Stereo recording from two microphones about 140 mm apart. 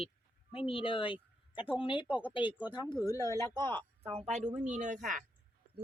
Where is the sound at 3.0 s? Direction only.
25° left (ahead or behind).